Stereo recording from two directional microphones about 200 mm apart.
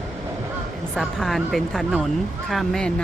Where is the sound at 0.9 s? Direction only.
Centre (ahead or behind).